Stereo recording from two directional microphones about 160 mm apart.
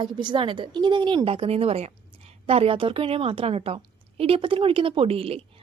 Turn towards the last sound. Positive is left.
turn(degrees=-35)  # may be behind; listen again after turning